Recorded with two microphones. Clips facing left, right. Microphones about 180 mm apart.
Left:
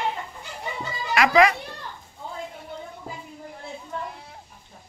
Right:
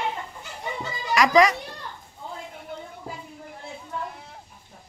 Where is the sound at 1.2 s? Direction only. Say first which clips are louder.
Even; 40° right (ahead or behind).